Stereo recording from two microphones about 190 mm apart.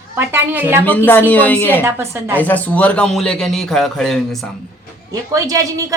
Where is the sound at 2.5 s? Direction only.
10° left (ahead or behind).